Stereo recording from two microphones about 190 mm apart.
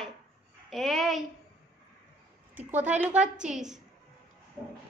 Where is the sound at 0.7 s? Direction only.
Centre (ahead or behind).